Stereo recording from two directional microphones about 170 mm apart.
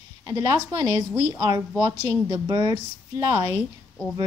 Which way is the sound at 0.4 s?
20° right (ahead or behind).